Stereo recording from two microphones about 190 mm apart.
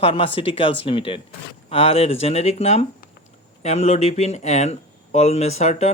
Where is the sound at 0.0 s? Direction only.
30° left (ahead or behind).